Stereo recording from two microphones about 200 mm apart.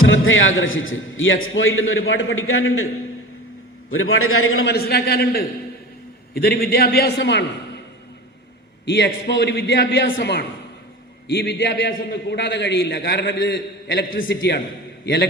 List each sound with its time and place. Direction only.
0.0 s a man's voice: 75° left (ahead or behind); by 2.8 s 90° left
3.8 s a man's voice: 90° left
4.7 s a man's voice: 50° left (ahead or behind)
8.9 s a man's voice: 55° left (ahead or behind)